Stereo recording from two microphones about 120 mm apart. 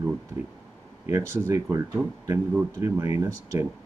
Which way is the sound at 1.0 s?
25° right (ahead or behind).